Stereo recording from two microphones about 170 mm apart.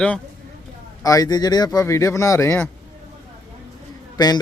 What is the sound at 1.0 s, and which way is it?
Speech, 20° left (ahead or behind).